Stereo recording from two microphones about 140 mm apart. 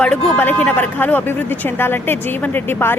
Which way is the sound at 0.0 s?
10° left (ahead or behind).